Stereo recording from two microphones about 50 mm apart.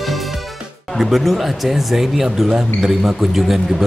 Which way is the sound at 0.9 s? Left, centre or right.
Centre.